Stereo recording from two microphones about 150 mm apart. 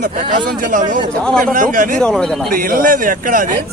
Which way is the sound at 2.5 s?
65° right (ahead or behind).